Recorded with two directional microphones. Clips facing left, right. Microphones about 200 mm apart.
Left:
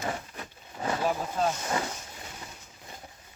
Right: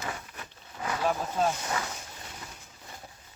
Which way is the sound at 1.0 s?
Centre (ahead or behind).